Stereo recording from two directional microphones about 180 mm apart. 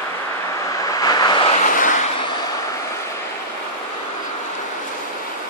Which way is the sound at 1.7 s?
45° left (ahead or behind).